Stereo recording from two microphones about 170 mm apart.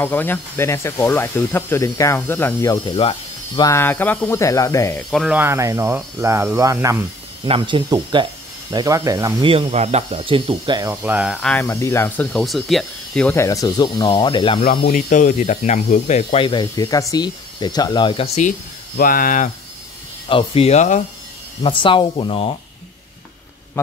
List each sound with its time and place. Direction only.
0.0 s speech: 10° left (ahead or behind)
2.9 s speech: 35° left (ahead or behind)
3.6 s speech: 15° left (ahead or behind)
5.1 s speech: centre (ahead or behind)
5.4 s speech: 15° right (ahead or behind)
7.4 s speech: 30° right (ahead or behind)
9.5 s speech: 35° right (ahead or behind)
10.9 s speech: 10° right (ahead or behind)
11.4 s speech: 10° left (ahead or behind)
12.3 s speech: centre (ahead or behind); by 14.6 s 30° left (ahead or behind)
14.9 s speech: 50° left (ahead or behind)
18.9 s speech: 55° left (ahead or behind)
20.2 s speech: 30° left (ahead or behind)
21.6 s speech: 30° left (ahead or behind)